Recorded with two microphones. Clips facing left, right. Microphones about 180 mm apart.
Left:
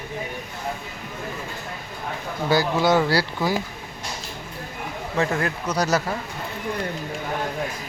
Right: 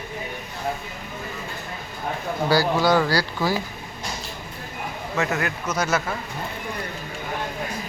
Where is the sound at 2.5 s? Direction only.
20° left (ahead or behind).